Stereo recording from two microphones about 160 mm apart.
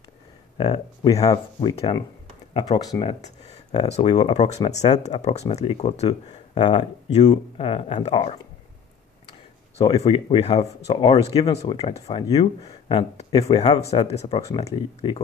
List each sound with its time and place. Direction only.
0.6 s speech: 25° left (ahead or behind)
3.1 s speech: 40° left (ahead or behind)
10.0 s speech: 35° left (ahead or behind)
12.8 s speech: 35° left (ahead or behind)